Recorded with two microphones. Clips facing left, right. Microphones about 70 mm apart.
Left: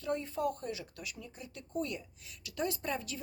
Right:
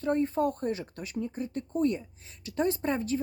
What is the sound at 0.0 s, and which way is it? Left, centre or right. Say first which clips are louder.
Speech: right 7 dB; right.